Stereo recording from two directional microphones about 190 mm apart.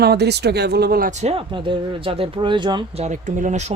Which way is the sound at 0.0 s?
60° right (ahead or behind).